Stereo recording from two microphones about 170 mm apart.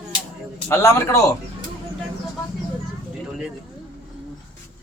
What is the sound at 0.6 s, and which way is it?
Speech, 15° left (ahead or behind).